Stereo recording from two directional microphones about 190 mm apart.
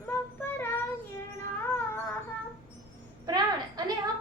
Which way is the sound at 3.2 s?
20° right (ahead or behind).